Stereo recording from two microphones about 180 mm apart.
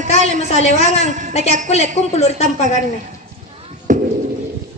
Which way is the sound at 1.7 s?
35° left (ahead or behind).